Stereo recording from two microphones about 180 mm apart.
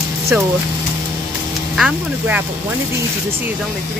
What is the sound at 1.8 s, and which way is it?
Speech, 10° right (ahead or behind).